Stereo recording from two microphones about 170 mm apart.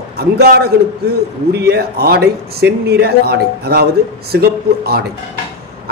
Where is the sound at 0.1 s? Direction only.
70° right (ahead or behind).